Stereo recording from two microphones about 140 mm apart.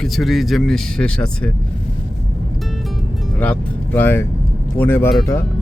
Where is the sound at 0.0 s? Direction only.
Centre (ahead or behind).